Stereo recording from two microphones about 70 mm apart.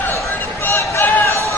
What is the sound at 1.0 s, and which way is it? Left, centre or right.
Run, left.